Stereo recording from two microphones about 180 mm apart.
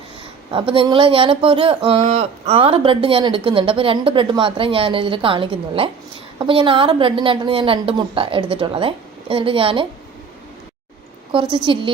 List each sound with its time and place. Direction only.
0.5 s speech: 30° right (ahead or behind)
11.5 s speech: 25° right (ahead or behind)